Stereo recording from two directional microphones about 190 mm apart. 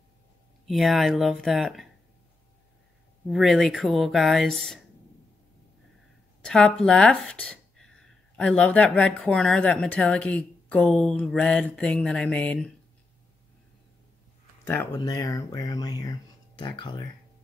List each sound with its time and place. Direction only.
0.7 s speech: centre (ahead or behind)
3.3 s speech: centre (ahead or behind)
6.4 s speech: 5° left (ahead or behind)
14.6 s speech: 10° left (ahead or behind)